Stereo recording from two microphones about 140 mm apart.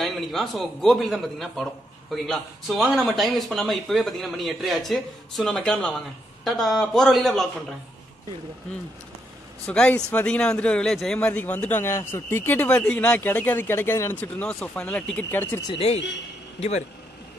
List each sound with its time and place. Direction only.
0.0 s speech: centre (ahead or behind)
9.7 s speech: 10° left (ahead or behind)
15.8 s a man's voice: 50° left (ahead or behind)